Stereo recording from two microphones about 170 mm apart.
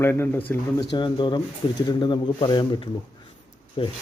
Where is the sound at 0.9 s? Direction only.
25° left (ahead or behind).